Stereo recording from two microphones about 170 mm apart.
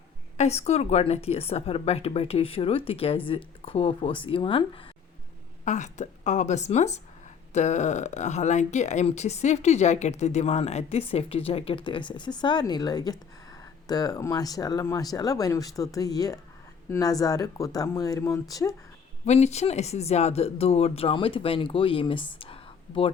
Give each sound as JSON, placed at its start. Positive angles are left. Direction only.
{"t": 0.3, "sound": "speech", "side_deg": 40}
{"t": 5.6, "sound": "a woman's voice", "side_deg": 45}
{"t": 19.2, "sound": "speech", "side_deg": 40}